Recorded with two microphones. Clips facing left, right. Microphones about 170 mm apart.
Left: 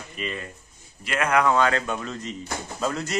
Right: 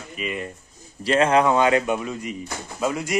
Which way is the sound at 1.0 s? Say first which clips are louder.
Right 4 dB; 30° right (ahead or behind).